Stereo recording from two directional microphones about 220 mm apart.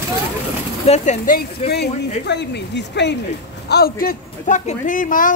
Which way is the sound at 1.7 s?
50° left (ahead or behind).